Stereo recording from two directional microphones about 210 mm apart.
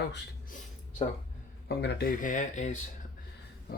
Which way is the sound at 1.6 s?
50° left (ahead or behind).